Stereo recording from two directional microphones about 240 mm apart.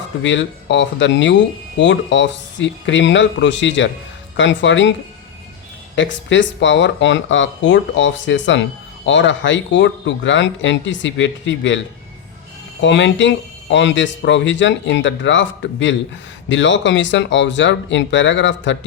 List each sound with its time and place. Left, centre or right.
0.2 s speech: left
6.0 s speech: left
12.8 s speech: left